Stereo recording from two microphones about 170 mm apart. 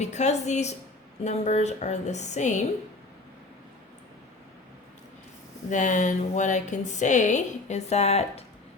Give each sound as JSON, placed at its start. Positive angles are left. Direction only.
{"t": 0.0, "sound": "a woman's voice", "side_deg": 40}
{"t": 5.7, "sound": "a woman's voice", "side_deg": 45}